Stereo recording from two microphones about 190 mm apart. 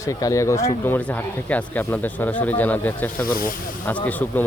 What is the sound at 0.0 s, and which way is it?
A man's voice, 15° left (ahead or behind).